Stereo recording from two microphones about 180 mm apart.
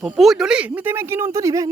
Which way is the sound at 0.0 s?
Centre (ahead or behind).